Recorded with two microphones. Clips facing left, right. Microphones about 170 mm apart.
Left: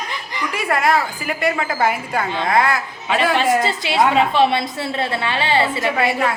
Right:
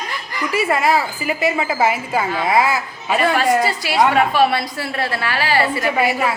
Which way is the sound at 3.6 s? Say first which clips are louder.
Right 1 dB; 25° left (ahead or behind).